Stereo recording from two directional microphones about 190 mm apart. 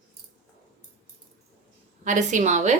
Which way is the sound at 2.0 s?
40° right (ahead or behind).